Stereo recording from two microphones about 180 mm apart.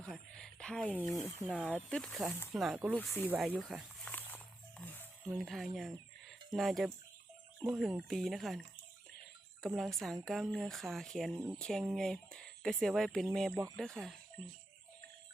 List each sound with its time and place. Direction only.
0.0 s speech: 5° left (ahead or behind)
4.0 s dog: 10° left (ahead or behind)
4.8 s a sound: 10° left (ahead or behind)
5.3 s speech: centre (ahead or behind)
9.6 s speech: centre (ahead or behind)
13.5 s speech: 20° right (ahead or behind)
13.7 s speech: 5° left (ahead or behind)